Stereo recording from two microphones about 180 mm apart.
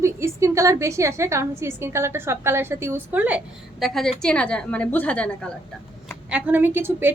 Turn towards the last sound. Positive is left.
turn(degrees=-10)  # may be behind; listen again after turning